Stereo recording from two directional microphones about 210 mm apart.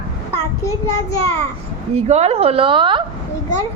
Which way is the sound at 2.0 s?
30° right (ahead or behind).